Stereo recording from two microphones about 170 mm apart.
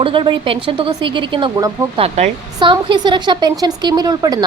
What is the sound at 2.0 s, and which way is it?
Speech, 40° right (ahead or behind).